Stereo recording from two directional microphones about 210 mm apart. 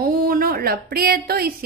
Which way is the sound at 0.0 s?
45° right (ahead or behind).